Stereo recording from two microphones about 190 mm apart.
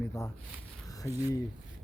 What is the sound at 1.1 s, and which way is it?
Speech, 10° right (ahead or behind).